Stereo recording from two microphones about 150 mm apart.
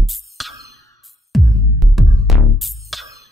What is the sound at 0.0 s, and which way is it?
Music, centre (ahead or behind).